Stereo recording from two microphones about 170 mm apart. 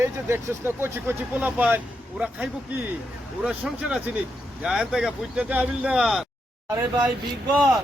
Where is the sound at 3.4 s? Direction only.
5° right (ahead or behind).